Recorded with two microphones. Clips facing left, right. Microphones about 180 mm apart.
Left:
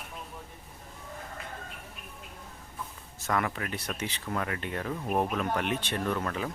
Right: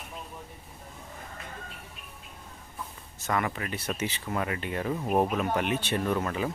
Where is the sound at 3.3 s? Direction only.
Centre (ahead or behind).